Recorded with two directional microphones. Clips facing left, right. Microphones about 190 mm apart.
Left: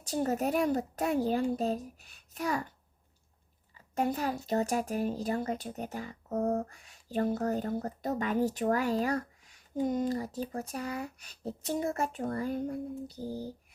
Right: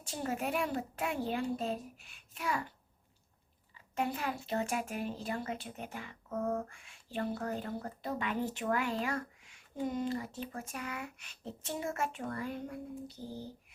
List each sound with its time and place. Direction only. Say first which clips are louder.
0.0 s speech: left 6 dB; 40° left (ahead or behind)
3.8 s speech: left 5 dB; 40° left (ahead or behind)